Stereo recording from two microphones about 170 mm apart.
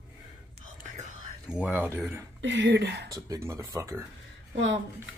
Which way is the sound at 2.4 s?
85° right.